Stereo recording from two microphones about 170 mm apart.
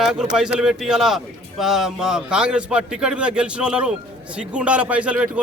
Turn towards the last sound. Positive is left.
turn(degrees=-5)  # may be behind; listen again after turning